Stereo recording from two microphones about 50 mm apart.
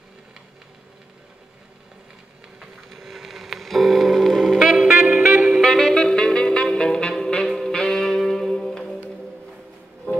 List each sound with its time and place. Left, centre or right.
2.9 s music: centre
4.7 s music: right
5.6 s saxophone: centre
6.0 s music: centre
10.1 s music: left